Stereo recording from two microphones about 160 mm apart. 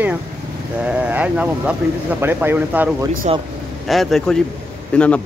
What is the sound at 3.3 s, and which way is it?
Speech, 40° right (ahead or behind).